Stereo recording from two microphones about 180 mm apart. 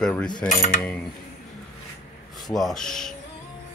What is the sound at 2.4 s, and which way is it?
Speech, centre (ahead or behind).